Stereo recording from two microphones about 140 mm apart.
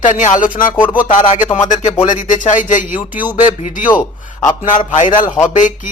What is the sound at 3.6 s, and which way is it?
Speech, 65° left (ahead or behind).